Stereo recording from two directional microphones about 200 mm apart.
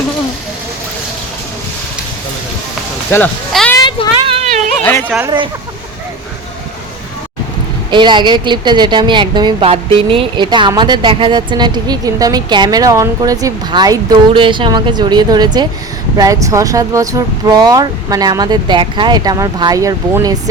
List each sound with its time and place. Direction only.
3.1 s speech: 5° left (ahead or behind)
3.8 s a sound: 20° left (ahead or behind)
4.8 s speech: 10° left (ahead or behind)
5.0 s speech: 10° right (ahead or behind)
7.9 s a woman's voice: 25° right (ahead or behind)